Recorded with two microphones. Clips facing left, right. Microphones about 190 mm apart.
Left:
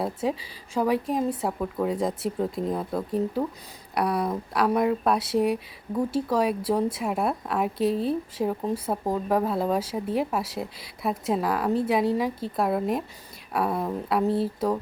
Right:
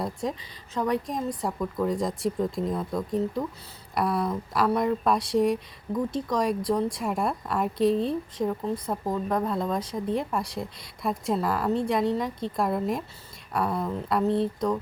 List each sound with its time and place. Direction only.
0.0 s a woman's voice: 5° left (ahead or behind)